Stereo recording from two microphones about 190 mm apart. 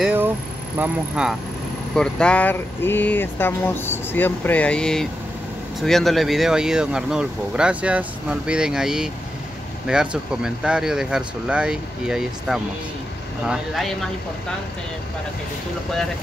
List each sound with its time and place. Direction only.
0.0 s vehicle: 10° right (ahead or behind)
0.7 s speech: 5° right (ahead or behind)
2.0 s speech: 5° left (ahead or behind)